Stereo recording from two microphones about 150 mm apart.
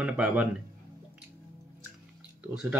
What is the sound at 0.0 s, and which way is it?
Speech, 10° right (ahead or behind).